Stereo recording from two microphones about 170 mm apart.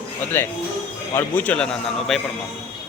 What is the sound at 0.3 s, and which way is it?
A man's voice, 15° left (ahead or behind).